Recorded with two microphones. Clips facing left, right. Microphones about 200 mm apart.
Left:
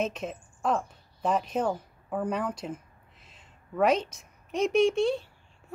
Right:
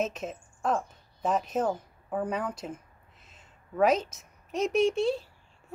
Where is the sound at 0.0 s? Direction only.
Centre (ahead or behind).